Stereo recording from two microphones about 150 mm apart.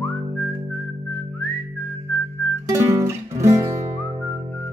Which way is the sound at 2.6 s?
20° right (ahead or behind).